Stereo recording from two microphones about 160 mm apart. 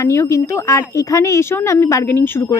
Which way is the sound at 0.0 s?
15° left (ahead or behind).